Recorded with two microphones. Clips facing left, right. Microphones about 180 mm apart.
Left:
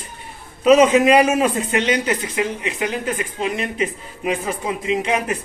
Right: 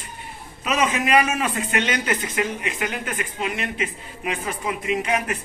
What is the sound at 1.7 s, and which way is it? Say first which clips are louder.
Speech: left 4 dB; 20° left (ahead or behind).